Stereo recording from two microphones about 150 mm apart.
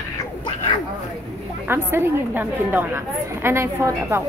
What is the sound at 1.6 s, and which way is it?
A woman's voice, 15° right (ahead or behind).